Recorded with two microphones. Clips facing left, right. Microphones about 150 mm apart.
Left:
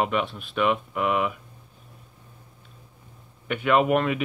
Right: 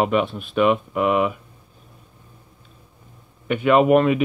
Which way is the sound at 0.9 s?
35° right (ahead or behind).